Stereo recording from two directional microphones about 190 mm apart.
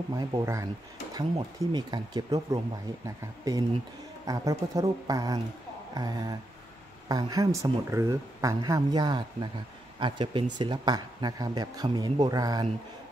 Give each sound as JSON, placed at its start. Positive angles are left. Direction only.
{"t": 0.1, "sound": "speech", "side_deg": -20}
{"t": 4.3, "sound": "speech", "side_deg": -20}